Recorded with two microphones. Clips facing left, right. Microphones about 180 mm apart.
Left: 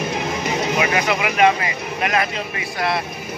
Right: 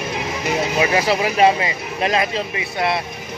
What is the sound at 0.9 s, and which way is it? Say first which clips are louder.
Speech: right 2 dB; 30° right (ahead or behind).